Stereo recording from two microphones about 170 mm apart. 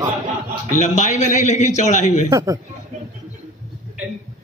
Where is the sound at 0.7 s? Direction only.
50° left (ahead or behind).